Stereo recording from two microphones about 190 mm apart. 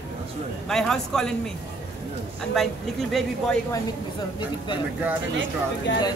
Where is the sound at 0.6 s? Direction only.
Centre (ahead or behind).